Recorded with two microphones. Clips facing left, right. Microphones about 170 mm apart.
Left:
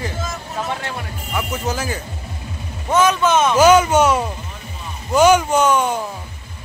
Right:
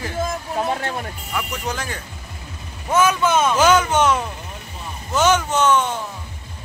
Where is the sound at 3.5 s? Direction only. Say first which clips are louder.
Left 4 dB; 10° left (ahead or behind).